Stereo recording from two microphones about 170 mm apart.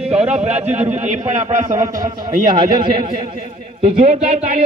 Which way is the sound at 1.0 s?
45° right (ahead or behind).